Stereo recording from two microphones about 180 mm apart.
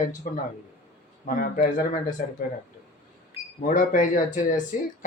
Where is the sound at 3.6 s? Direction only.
45° left (ahead or behind).